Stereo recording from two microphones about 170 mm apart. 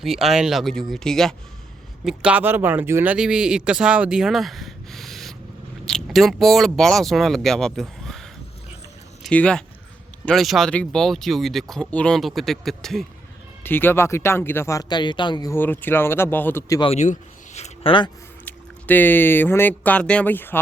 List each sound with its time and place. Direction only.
0.0 s speech: centre (ahead or behind)
2.0 s speech: 5° right (ahead or behind)
13.7 s speech: 10° left (ahead or behind)
16.8 s a sound: 40° left (ahead or behind)
18.4 s speech: 10° left (ahead or behind)